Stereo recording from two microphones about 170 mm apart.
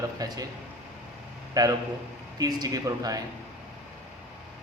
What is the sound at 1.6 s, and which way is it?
A man's voice, 20° right (ahead or behind).